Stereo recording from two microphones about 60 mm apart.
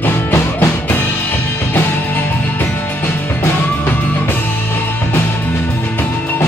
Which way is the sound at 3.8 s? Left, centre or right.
Left.